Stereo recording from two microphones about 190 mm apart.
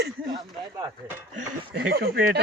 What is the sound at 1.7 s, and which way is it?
Speech, 55° right (ahead or behind).